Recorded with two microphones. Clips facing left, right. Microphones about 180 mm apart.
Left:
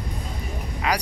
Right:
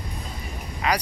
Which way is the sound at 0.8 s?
5° left (ahead or behind).